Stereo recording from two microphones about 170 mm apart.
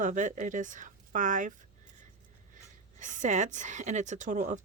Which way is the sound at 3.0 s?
45° right (ahead or behind).